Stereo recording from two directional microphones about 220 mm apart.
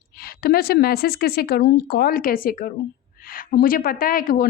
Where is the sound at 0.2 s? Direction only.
45° left (ahead or behind).